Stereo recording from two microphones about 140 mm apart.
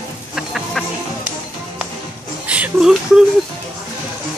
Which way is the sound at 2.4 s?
10° right (ahead or behind).